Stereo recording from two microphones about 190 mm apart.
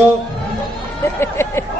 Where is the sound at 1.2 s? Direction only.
15° left (ahead or behind).